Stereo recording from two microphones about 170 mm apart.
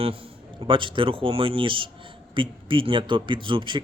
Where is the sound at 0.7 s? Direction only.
30° right (ahead or behind).